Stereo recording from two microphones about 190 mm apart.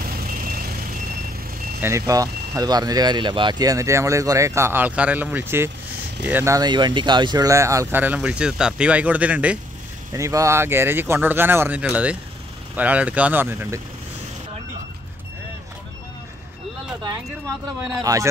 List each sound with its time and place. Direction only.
0.0 s vehicle: 50° right (ahead or behind)
1.8 s speech: 15° right (ahead or behind)
18.0 s speech: 15° right (ahead or behind)